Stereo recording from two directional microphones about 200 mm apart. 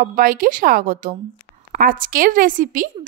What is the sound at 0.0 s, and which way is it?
A woman's voice, 45° right (ahead or behind).